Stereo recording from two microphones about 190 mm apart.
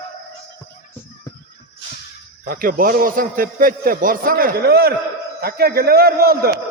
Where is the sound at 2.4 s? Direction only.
50° right (ahead or behind).